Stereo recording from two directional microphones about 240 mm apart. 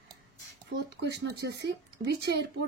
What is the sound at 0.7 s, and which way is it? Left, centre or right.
Speech, right.